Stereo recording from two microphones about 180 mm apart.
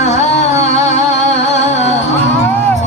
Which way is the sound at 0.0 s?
40° left (ahead or behind).